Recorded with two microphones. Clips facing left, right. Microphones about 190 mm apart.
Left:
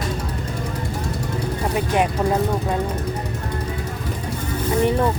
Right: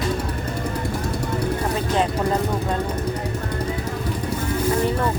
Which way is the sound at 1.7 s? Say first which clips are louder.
Left 4 dB; 15° left (ahead or behind).